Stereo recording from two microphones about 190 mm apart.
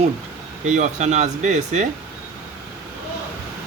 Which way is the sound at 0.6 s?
40° right (ahead or behind).